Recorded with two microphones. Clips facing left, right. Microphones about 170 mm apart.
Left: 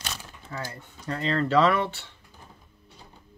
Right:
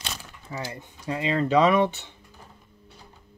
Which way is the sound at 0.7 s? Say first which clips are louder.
Right 2 dB; 15° right (ahead or behind).